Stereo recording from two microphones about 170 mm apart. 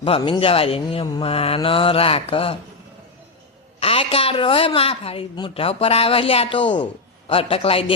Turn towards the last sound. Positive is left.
turn(degrees=35)  # may be behind; listen again after turning